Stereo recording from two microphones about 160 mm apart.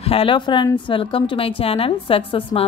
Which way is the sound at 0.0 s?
35° left (ahead or behind).